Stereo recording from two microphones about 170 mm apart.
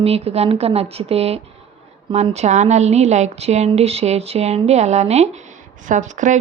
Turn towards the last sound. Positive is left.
turn(degrees=-45)  # may be behind; listen again after turning